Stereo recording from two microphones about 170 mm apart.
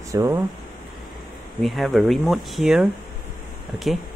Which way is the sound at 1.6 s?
Centre (ahead or behind).